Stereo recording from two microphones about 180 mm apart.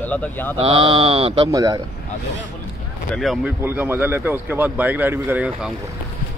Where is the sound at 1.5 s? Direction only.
20° right (ahead or behind).